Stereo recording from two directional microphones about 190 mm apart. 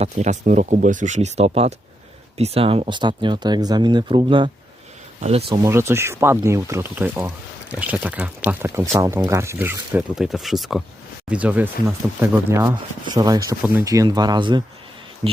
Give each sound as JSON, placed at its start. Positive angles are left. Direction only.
{"t": 0.0, "sound": "speech", "side_deg": -40}
{"t": 5.6, "sound": "speech", "side_deg": -15}
{"t": 15.2, "sound": "a sound", "side_deg": -25}